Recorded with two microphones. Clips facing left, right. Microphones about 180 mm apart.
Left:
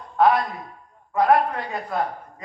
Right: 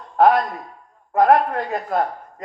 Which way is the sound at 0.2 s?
50° right (ahead or behind).